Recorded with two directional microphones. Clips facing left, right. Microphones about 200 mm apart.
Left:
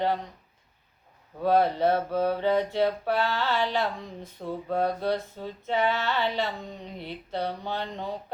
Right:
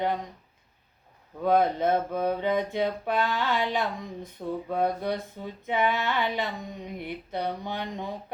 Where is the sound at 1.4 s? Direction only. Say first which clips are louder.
Left 1 dB; 15° right (ahead or behind).